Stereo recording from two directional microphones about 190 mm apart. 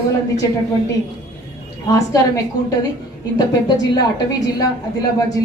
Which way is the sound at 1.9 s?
20° left (ahead or behind).